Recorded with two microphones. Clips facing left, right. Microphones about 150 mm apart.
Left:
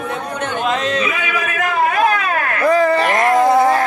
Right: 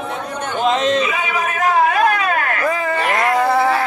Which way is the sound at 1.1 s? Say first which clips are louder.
Right 1 dB; 65° left (ahead or behind).